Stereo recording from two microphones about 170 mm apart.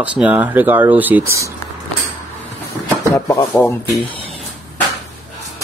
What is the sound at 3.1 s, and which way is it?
Speech, 20° left (ahead or behind).